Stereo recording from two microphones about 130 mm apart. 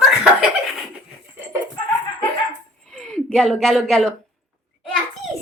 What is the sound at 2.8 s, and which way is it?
A woman's voice, 5° left (ahead or behind).